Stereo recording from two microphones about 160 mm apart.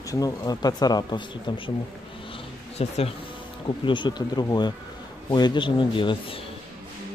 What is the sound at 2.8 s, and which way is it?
Speech, 40° left (ahead or behind).